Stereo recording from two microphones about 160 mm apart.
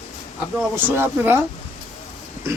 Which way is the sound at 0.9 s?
15° right (ahead or behind).